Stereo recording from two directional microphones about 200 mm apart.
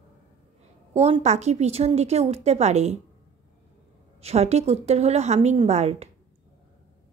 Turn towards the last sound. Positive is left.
turn(degrees=-35)  # may be behind; listen again after turning